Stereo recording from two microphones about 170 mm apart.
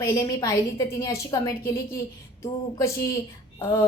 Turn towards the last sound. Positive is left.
turn(degrees=15)  # may be behind; listen again after turning